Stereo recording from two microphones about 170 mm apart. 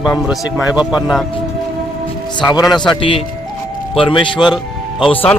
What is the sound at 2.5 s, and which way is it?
A man's voice, 25° left (ahead or behind).